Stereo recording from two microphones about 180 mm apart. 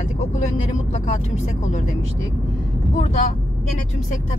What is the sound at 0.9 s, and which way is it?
Speech, 35° left (ahead or behind).